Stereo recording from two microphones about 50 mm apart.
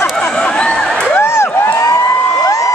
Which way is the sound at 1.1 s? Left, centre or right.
Left.